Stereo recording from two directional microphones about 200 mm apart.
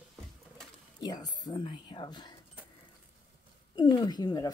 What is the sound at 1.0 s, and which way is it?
Speech, 20° left (ahead or behind).